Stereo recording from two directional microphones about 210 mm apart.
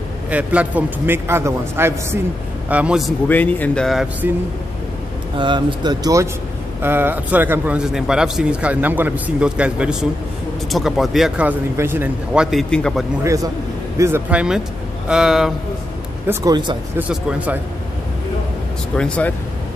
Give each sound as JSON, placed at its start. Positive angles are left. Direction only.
{"t": 0.3, "sound": "a man's voice", "side_deg": -5}
{"t": 5.4, "sound": "a man's voice", "side_deg": -25}
{"t": 13.2, "sound": "a man's voice", "side_deg": -15}
{"t": 16.3, "sound": "speech", "side_deg": -20}
{"t": 17.1, "sound": "speech", "side_deg": -5}
{"t": 18.9, "sound": "speech", "side_deg": 5}